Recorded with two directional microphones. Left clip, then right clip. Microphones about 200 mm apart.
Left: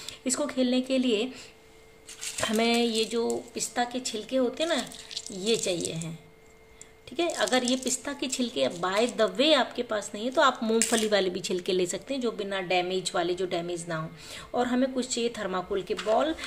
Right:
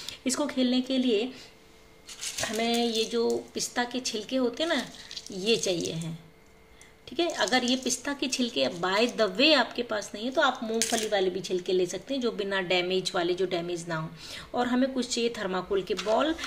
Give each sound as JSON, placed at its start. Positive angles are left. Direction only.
{"t": 0.0, "sound": "speech", "side_deg": 0}
{"t": 2.4, "sound": "speech", "side_deg": 25}
{"t": 7.2, "sound": "a woman's voice", "side_deg": 5}
{"t": 12.1, "sound": "speech", "side_deg": 5}